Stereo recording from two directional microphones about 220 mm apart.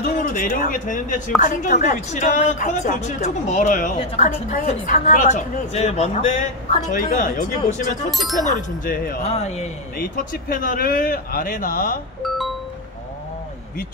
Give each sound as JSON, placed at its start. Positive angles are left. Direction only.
{"t": 0.2, "sound": "a woman's voice", "side_deg": 40}
{"t": 8.1, "sound": "speech", "side_deg": 0}
{"t": 8.5, "sound": "a woman's voice", "side_deg": 35}
{"t": 9.2, "sound": "a woman's voice", "side_deg": 30}
{"t": 12.2, "sound": "doorbell", "side_deg": 0}